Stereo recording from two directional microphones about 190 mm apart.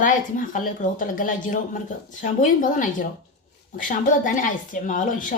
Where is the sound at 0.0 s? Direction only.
45° left (ahead or behind).